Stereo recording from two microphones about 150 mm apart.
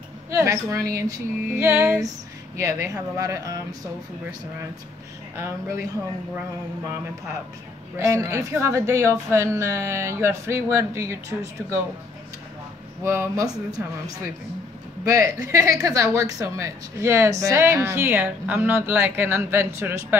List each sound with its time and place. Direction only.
0.3 s a woman's voice: 20° right (ahead or behind)
5.3 s a woman's voice: 20° right (ahead or behind)
8.0 s a woman's voice: 20° right (ahead or behind)
13.0 s a woman's voice: 20° right (ahead or behind)
15.0 s speech: 20° right (ahead or behind)